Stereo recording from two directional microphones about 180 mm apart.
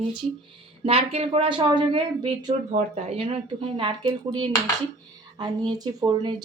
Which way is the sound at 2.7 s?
45° right (ahead or behind).